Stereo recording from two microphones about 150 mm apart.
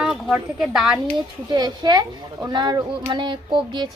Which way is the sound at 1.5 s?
30° right (ahead or behind).